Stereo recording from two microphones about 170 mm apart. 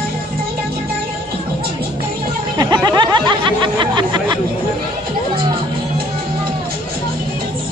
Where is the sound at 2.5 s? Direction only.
25° right (ahead or behind).